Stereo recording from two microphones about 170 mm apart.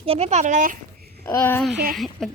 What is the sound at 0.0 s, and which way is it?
Speech, 35° right (ahead or behind).